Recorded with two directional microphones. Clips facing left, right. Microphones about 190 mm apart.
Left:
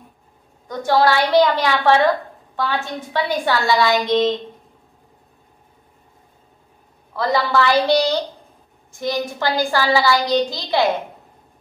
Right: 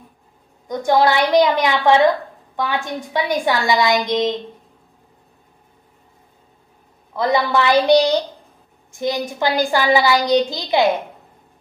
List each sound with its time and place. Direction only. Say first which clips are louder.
0.7 s a woman's voice: right 1 dB; 15° right (ahead or behind)
7.2 s a woman's voice: right 1 dB; 20° right (ahead or behind)